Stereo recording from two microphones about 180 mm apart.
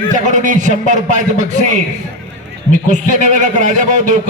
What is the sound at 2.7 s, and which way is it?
A man's voice, 45° right (ahead or behind).